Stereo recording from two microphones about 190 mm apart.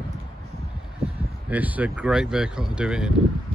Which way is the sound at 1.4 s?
10° right (ahead or behind).